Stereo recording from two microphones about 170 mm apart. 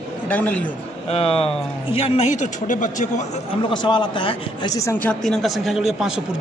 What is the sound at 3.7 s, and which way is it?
A man's voice, 25° left (ahead or behind).